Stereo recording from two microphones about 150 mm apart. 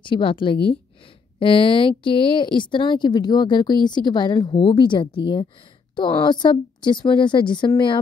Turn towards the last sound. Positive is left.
turn(degrees=30)  # may be behind; listen again after turning